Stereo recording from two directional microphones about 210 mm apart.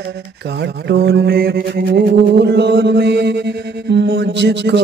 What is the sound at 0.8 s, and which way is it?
Mantra, 50° right (ahead or behind).